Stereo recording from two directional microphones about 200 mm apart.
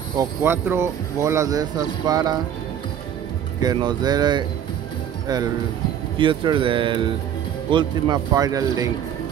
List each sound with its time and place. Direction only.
0.2 s speech: 10° right (ahead or behind)
3.6 s speech: 20° right (ahead or behind)
6.1 s speech: 25° right (ahead or behind)